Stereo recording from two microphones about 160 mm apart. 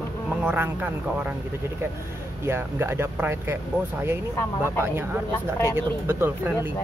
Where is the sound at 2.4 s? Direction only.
15° right (ahead or behind).